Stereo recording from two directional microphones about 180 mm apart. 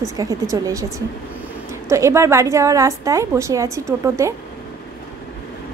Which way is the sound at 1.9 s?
15° right (ahead or behind).